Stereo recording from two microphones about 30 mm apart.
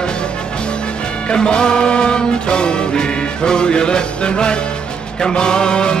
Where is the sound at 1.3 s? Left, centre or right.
Left.